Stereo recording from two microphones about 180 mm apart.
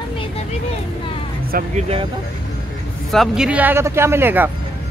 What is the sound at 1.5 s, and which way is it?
Speech, 55° right (ahead or behind).